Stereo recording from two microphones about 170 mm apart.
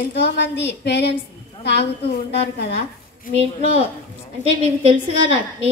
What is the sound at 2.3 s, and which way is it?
Speech, 70° left (ahead or behind).